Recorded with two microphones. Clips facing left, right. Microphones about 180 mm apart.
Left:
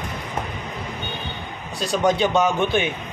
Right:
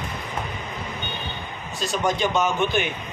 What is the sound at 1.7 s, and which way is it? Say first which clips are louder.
Speech: left 4 dB; 35° left (ahead or behind).